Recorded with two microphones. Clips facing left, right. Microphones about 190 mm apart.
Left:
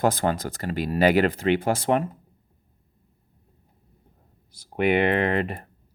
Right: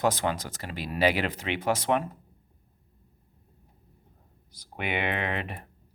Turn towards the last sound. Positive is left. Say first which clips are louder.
# left 8 dB
turn(degrees=40)  # may be behind; listen again after turning